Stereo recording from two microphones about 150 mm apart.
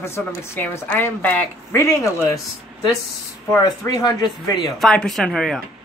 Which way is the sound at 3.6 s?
25° left (ahead or behind).